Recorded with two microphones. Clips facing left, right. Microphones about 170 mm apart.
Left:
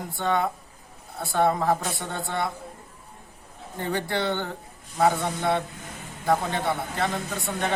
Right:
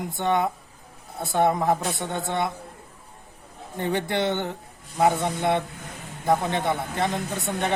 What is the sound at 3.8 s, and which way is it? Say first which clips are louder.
Speech: right 2 dB; 20° right (ahead or behind).